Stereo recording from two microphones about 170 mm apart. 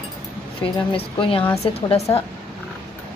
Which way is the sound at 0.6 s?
30° left (ahead or behind).